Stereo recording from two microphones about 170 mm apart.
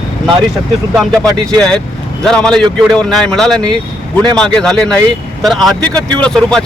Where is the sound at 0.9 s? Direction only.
5° left (ahead or behind).